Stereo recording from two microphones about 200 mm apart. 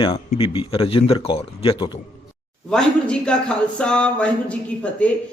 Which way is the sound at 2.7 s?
5° left (ahead or behind).